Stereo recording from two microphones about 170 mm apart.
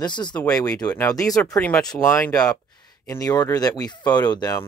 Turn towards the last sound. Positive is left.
turn(degrees=25)  # may be behind; listen again after turning